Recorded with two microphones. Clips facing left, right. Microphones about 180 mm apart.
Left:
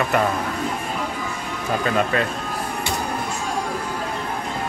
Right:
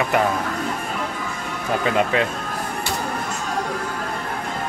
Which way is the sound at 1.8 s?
15° right (ahead or behind).